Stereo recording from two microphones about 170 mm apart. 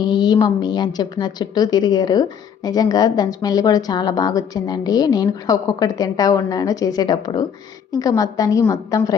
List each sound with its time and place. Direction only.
0.1 s a woman's voice: 25° left (ahead or behind)